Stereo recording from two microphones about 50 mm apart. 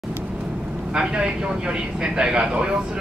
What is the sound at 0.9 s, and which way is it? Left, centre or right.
A man's voice, centre.